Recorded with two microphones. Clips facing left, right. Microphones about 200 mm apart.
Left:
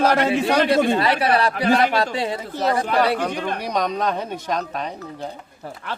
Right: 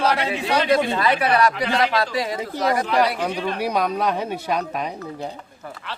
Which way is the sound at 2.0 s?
30° left (ahead or behind).